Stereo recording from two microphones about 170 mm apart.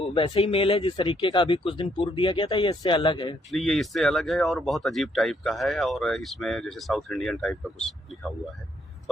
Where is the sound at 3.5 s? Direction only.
Centre (ahead or behind).